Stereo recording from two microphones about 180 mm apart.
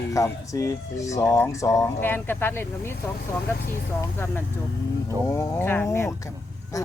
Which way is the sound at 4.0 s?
15° left (ahead or behind).